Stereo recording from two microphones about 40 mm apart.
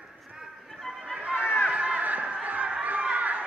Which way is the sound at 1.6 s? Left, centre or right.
Right.